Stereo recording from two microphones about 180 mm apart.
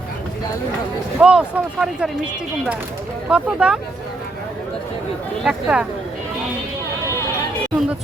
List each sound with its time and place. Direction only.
1.2 s speech: 5° right (ahead or behind)
3.2 s speech: 5° right (ahead or behind)
5.4 s speech: 5° right (ahead or behind)